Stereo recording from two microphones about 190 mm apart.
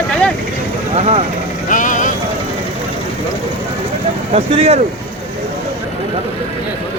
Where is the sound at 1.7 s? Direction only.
40° left (ahead or behind).